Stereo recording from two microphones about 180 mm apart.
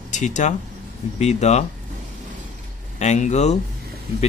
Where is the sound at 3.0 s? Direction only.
40° left (ahead or behind).